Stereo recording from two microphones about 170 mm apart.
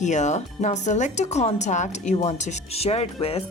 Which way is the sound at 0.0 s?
45° left (ahead or behind).